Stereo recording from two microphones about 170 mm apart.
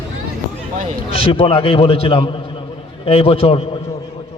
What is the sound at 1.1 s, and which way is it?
A man's voice, 35° left (ahead or behind).